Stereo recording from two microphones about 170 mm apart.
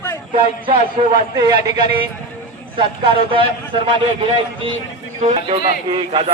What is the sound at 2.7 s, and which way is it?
Speech, 30° right (ahead or behind).